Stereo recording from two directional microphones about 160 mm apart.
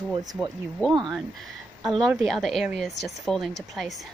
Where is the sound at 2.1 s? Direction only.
Centre (ahead or behind).